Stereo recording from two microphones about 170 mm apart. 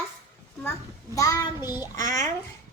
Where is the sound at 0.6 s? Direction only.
15° left (ahead or behind).